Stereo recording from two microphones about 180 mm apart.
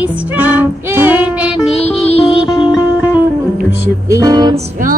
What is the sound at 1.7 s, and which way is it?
Music, 35° left (ahead or behind).